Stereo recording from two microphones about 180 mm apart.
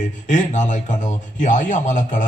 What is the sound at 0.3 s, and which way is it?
A man's voice, 40° left (ahead or behind).